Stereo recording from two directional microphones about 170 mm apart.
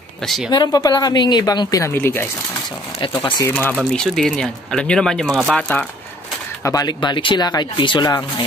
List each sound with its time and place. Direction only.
0.7 s speech: 20° left (ahead or behind)
3.0 s speech: 30° left (ahead or behind)
3.9 s speech: 5° left (ahead or behind)
6.6 s speech: 20° left (ahead or behind)